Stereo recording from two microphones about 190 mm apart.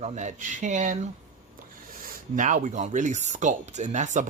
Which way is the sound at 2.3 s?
40° right (ahead or behind).